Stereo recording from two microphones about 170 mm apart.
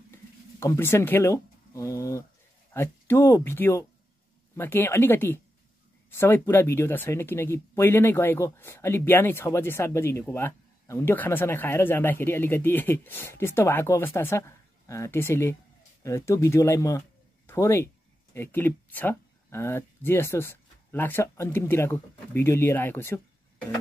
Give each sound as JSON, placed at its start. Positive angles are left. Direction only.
{"t": 0.6, "sound": "speech", "side_deg": 15}